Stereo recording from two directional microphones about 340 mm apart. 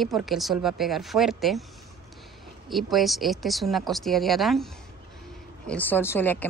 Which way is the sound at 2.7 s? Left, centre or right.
Centre.